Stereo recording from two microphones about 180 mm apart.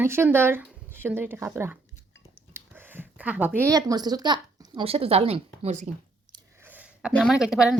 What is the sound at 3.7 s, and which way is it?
A woman's voice, 20° right (ahead or behind).